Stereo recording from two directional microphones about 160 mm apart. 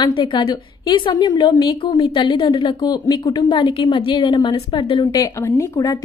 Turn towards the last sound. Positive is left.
turn(degrees=20)  # may be behind; listen again after turning